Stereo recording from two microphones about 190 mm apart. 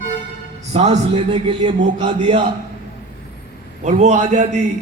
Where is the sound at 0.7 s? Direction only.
30° right (ahead or behind).